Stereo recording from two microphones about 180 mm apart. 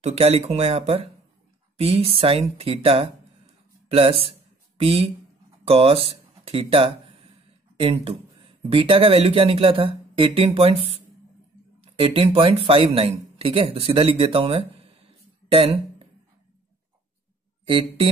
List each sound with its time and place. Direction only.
0.0 s speech: 35° right (ahead or behind)
15.4 s a sound: 30° right (ahead or behind)
17.6 s speech: 30° right (ahead or behind)